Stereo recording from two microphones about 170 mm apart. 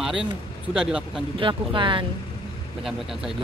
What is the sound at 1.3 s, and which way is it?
Speech, 30° right (ahead or behind).